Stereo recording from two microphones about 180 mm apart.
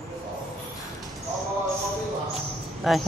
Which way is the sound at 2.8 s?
Centre (ahead or behind).